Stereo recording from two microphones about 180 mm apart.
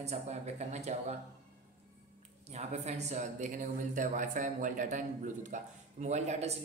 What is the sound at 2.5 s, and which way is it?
Speech, 35° right (ahead or behind).